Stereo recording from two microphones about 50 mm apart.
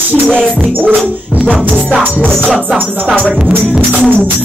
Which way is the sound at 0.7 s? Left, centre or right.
Right.